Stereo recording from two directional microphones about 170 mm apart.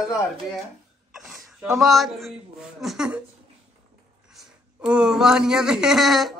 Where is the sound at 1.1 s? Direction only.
Centre (ahead or behind).